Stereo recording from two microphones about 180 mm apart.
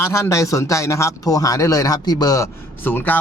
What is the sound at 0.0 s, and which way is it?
A man's voice, 15° left (ahead or behind).